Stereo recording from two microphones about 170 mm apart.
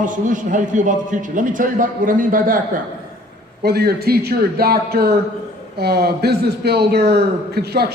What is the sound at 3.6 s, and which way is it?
A man's voice, 70° right (ahead or behind).